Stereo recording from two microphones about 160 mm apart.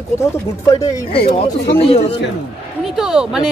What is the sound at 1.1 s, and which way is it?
Speech, 35° left (ahead or behind).